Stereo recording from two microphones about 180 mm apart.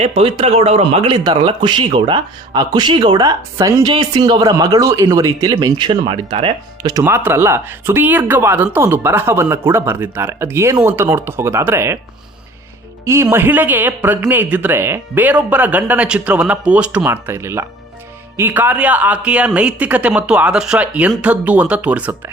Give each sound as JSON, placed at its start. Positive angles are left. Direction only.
{"t": 0.2, "sound": "a man's voice", "side_deg": -30}
{"t": 13.2, "sound": "speech", "side_deg": -10}